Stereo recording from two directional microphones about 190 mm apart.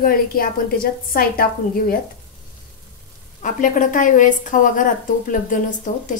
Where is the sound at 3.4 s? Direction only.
40° left (ahead or behind).